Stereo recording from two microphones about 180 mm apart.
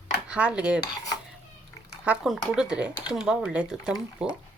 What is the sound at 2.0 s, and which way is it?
Speech, 5° right (ahead or behind).